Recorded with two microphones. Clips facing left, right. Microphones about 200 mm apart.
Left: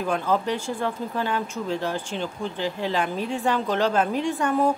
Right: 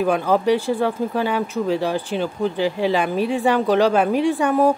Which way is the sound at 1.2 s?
10° right (ahead or behind).